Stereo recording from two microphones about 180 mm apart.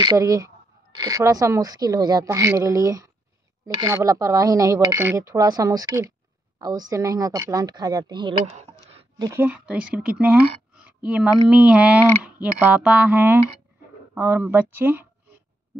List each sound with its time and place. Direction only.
0.0 s speech: 20° right (ahead or behind)
8.5 s a sound: 35° right (ahead or behind)
9.2 s speech: 15° right (ahead or behind)